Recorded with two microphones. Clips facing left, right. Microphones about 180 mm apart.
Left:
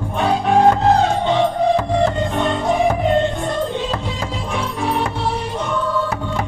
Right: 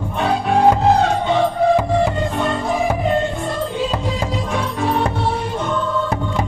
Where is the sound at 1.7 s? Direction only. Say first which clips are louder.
Right 1 dB; 5° right (ahead or behind).